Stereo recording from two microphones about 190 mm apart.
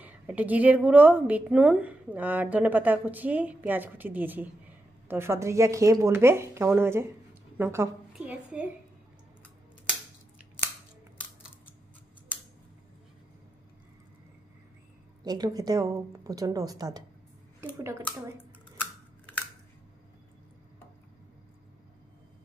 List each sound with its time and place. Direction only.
0.0 s a woman's voice: 10° right (ahead or behind)
15.2 s a woman's voice: 20° right (ahead or behind)